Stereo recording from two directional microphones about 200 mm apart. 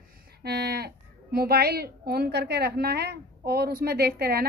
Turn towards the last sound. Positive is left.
turn(degrees=-50)  # may be behind; listen again after turning